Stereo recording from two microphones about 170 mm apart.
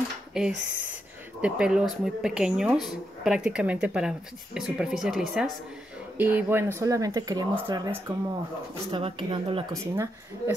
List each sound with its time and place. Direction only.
0.3 s speech: 5° right (ahead or behind); by 9.7 s 30° right (ahead or behind)
9.7 s speech: 20° right (ahead or behind)